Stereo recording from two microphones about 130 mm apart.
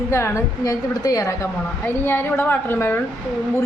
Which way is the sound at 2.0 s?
15° left (ahead or behind).